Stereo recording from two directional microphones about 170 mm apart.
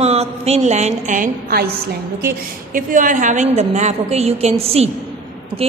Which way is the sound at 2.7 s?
50° right (ahead or behind).